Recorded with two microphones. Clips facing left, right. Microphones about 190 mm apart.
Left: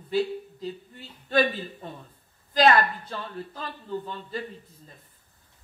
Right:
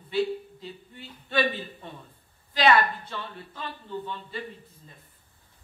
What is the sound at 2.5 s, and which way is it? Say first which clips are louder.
A woman's voice: left 2 dB; 40° left (ahead or behind).